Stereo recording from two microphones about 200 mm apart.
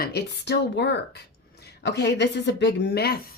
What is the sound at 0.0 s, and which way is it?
A woman's voice, 55° left (ahead or behind).